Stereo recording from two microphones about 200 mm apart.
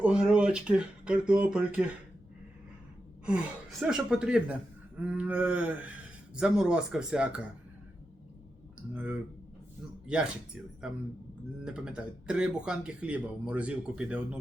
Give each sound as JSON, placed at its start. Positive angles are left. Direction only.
{"t": 0.0, "sound": "speech", "side_deg": -5}
{"t": 3.2, "sound": "speech", "side_deg": 0}
{"t": 4.9, "sound": "a sound", "side_deg": -5}
{"t": 6.3, "sound": "speech", "side_deg": -5}
{"t": 10.1, "sound": "speech", "side_deg": -5}